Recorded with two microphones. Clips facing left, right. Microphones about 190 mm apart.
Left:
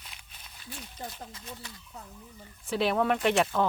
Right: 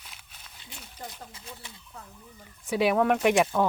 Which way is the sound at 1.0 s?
20° left (ahead or behind).